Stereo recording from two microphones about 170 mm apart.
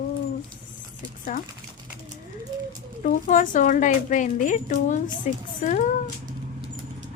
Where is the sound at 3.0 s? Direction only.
50° left (ahead or behind).